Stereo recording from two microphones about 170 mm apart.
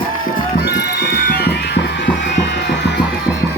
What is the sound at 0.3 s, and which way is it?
Music, 75° left (ahead or behind).